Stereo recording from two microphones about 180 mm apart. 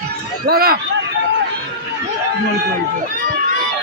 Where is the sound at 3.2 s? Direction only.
50° right (ahead or behind).